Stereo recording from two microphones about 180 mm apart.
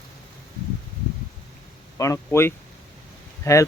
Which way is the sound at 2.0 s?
15° left (ahead or behind).